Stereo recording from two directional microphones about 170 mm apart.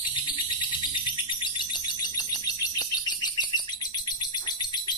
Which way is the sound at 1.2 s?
25° left (ahead or behind).